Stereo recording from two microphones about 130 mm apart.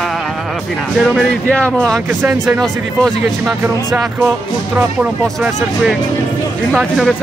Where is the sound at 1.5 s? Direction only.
10° left (ahead or behind).